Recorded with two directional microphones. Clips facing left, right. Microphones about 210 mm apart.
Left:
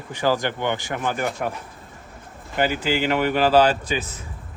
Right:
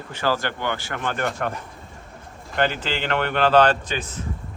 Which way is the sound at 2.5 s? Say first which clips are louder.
Left 2 dB; 10° left (ahead or behind).